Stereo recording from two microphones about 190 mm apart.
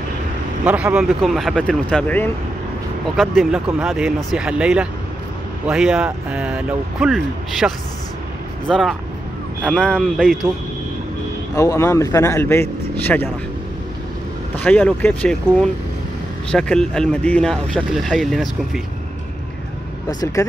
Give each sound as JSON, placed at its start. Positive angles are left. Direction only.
{"t": 0.7, "sound": "speech", "side_deg": -5}
{"t": 3.2, "sound": "speech", "side_deg": 0}
{"t": 11.5, "sound": "speech", "side_deg": 15}
{"t": 14.6, "sound": "speech", "side_deg": 10}
{"t": 20.1, "sound": "speech", "side_deg": 20}